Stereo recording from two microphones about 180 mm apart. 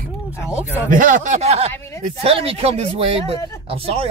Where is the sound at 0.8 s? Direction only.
50° right (ahead or behind).